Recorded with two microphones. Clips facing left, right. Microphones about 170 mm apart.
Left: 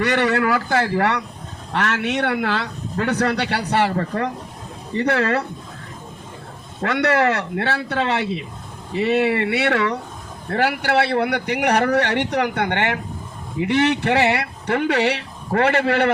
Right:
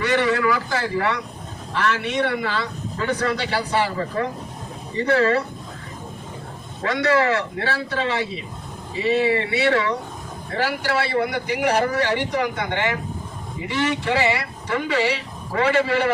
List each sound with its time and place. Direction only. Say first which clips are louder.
0.0 s speech: left 1 dB; 60° left (ahead or behind)
6.8 s speech: left 1 dB; 60° left (ahead or behind)